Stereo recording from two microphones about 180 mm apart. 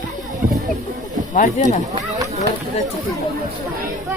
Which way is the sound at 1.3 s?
45° left (ahead or behind).